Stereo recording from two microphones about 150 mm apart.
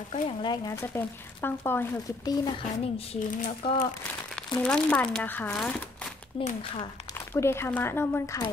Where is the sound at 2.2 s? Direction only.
25° left (ahead or behind).